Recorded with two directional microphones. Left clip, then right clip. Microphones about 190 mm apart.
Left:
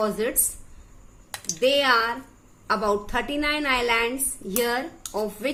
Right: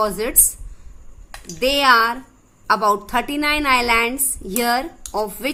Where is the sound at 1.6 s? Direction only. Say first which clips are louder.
Right 6 dB; 50° right (ahead or behind).